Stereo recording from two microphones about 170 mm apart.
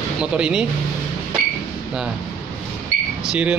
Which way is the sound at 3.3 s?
5° right (ahead or behind).